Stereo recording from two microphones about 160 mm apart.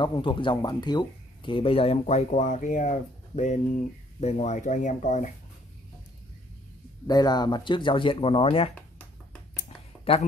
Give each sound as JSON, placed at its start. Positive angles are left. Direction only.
{"t": 0.0, "sound": "speech", "side_deg": 30}
{"t": 7.1, "sound": "speech", "side_deg": 25}
{"t": 8.7, "sound": "finger snapping", "side_deg": 5}
{"t": 10.1, "sound": "speech", "side_deg": 40}